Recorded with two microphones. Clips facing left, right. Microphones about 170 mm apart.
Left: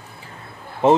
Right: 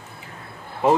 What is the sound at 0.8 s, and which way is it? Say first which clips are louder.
Speech: left 3 dB; 25° left (ahead or behind).